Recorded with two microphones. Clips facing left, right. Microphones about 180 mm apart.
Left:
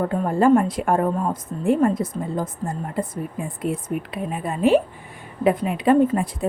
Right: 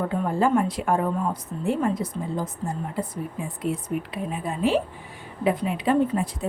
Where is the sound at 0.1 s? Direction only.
50° left (ahead or behind).